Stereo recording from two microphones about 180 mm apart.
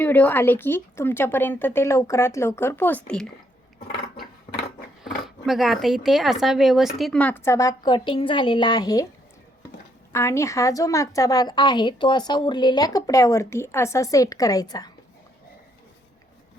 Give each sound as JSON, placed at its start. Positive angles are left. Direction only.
{"t": 0.0, "sound": "a woman's voice", "side_deg": 10}
{"t": 5.0, "sound": "speech", "side_deg": 0}
{"t": 10.1, "sound": "a woman's voice", "side_deg": 15}